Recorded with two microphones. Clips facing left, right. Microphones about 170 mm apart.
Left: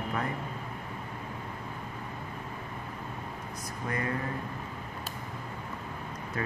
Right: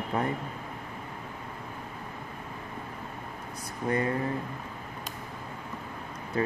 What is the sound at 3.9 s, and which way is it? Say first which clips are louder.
Speech: right 6 dB; 30° right (ahead or behind).